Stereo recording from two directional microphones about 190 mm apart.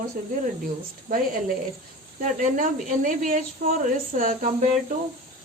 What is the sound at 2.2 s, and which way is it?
Speech, 45° right (ahead or behind).